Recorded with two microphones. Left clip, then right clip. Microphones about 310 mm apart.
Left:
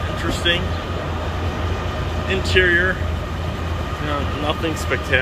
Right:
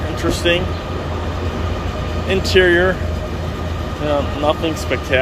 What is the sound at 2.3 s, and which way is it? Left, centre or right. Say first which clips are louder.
Speech: right 3 dB; centre.